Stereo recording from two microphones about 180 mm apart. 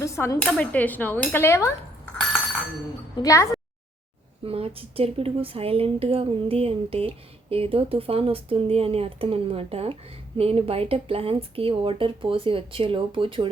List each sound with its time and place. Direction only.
0.0 s dishes: 15° left (ahead or behind)
0.3 s dishes: 5° left (ahead or behind)
3.2 s dishes: 20° left (ahead or behind)
4.4 s speech: 30° right (ahead or behind)